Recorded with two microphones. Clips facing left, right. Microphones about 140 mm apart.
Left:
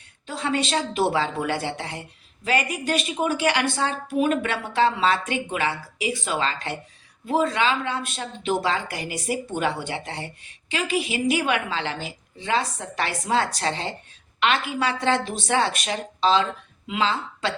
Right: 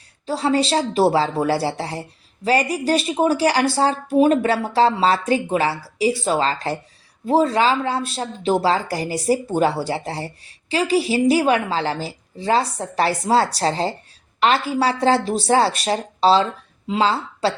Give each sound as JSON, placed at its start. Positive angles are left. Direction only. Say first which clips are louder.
{"t": 0.3, "sound": "speech", "louder": "right 6 dB", "side_deg": -35}